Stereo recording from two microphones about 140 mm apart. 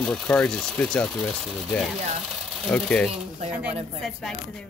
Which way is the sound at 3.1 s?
50° right (ahead or behind).